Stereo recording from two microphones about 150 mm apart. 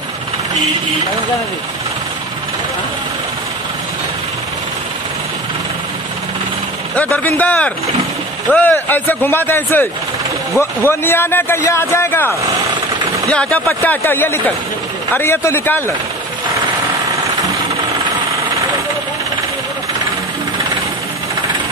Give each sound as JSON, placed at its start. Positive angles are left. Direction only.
{"t": 7.0, "sound": "speech", "side_deg": 10}